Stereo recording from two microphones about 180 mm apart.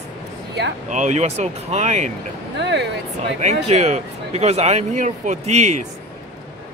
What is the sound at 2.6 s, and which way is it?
Speech, 70° right (ahead or behind).